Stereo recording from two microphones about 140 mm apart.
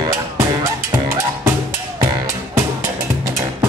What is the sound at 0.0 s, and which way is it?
Music, 20° right (ahead or behind).